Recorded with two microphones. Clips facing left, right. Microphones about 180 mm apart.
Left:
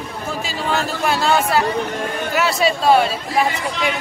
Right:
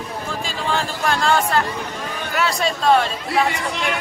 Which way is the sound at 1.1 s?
5° left (ahead or behind).